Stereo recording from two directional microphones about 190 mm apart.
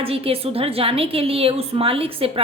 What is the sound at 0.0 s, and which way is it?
A woman's voice, 30° right (ahead or behind).